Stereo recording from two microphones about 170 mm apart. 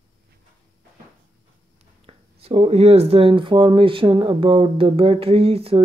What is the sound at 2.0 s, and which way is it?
Speech, 35° right (ahead or behind).